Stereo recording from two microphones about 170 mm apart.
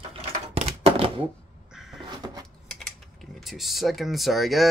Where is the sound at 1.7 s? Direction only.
Centre (ahead or behind).